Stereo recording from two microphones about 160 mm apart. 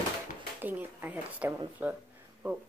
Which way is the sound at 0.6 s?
10° right (ahead or behind).